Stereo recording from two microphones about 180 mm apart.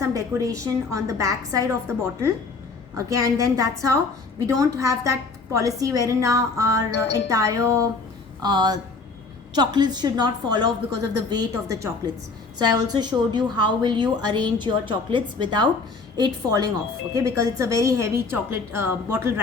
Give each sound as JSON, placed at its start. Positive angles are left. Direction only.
{"t": 0.0, "sound": "a woman's voice", "side_deg": -20}
{"t": 3.1, "sound": "a woman's voice", "side_deg": -15}